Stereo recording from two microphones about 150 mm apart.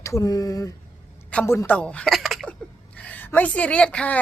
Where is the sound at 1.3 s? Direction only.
15° left (ahead or behind).